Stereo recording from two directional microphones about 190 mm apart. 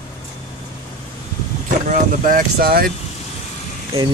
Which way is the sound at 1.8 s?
45° right (ahead or behind).